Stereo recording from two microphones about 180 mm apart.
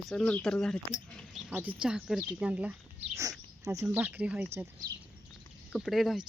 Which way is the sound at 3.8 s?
10° right (ahead or behind).